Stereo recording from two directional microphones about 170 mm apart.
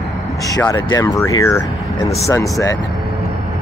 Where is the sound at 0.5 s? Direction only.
20° left (ahead or behind).